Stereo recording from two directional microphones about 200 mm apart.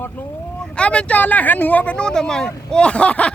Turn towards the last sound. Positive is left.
turn(degrees=5)  # may be behind; listen again after turning